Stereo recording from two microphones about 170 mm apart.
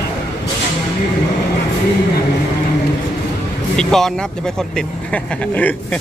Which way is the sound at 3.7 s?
Centre (ahead or behind).